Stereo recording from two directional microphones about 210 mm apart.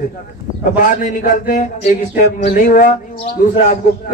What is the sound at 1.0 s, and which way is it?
A man's voice, 40° left (ahead or behind).